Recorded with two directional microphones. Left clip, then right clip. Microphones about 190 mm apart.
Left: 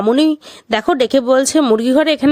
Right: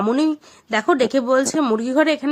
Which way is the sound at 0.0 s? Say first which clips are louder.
Left 6 dB; 40° left (ahead or behind).